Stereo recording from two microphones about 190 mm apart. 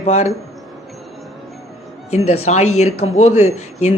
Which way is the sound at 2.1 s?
35° left (ahead or behind).